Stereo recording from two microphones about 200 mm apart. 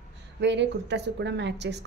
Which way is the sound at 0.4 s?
60° right (ahead or behind).